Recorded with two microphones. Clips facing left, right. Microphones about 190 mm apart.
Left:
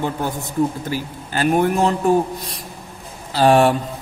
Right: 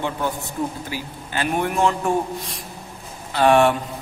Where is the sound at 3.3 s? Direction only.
35° left (ahead or behind).